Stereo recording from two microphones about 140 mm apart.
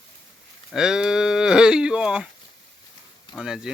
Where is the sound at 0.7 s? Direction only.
5° right (ahead or behind).